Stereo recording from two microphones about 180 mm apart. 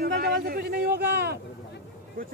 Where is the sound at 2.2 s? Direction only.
50° right (ahead or behind).